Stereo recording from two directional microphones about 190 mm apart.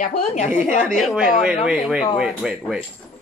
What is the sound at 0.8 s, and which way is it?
A woman's voice, centre (ahead or behind).